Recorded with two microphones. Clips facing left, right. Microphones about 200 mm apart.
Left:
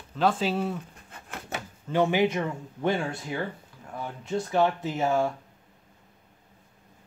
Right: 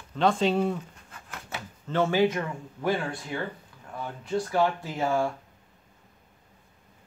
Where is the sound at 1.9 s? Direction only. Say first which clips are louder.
Even; 15° left (ahead or behind).